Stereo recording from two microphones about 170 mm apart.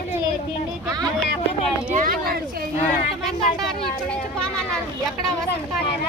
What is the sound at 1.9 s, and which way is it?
Speech, 55° right (ahead or behind).